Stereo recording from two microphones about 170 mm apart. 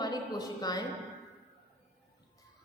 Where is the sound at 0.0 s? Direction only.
25° left (ahead or behind).